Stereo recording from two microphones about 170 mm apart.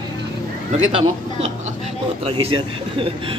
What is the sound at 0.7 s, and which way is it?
A man's voice, 40° right (ahead or behind).